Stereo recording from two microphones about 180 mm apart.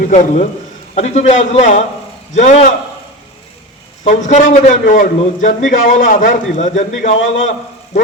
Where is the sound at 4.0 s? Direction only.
40° left (ahead or behind).